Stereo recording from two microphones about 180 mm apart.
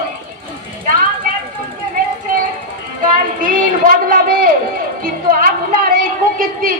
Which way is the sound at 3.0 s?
50° right (ahead or behind).